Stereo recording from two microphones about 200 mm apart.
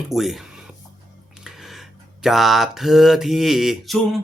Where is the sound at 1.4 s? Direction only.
Centre (ahead or behind).